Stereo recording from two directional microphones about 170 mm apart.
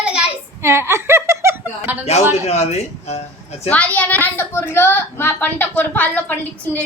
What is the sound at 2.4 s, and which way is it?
Speech, 40° left (ahead or behind).